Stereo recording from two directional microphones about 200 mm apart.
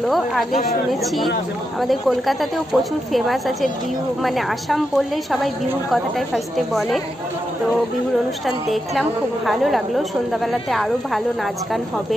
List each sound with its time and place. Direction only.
0.1 s a woman's voice: centre (ahead or behind)
1.8 s a woman's voice: centre (ahead or behind)
8.5 s a woman's voice: centre (ahead or behind)